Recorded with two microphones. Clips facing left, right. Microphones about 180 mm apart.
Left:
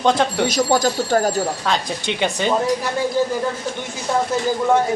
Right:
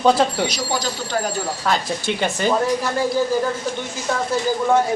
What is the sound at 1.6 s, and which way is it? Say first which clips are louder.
Speech: right 1 dB; 5° right (ahead or behind).